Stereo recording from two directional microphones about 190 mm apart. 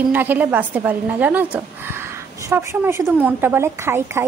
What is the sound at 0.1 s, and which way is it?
A woman's voice, 10° right (ahead or behind).